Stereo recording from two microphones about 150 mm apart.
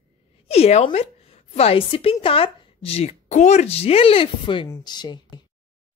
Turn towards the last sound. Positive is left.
turn(degrees=30)  # may be behind; listen again after turning